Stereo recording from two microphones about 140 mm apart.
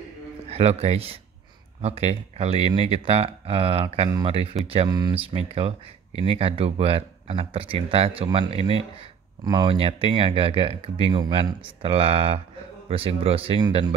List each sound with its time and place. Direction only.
0.5 s speech: 50° right (ahead or behind)
4.8 s speech: 30° right (ahead or behind)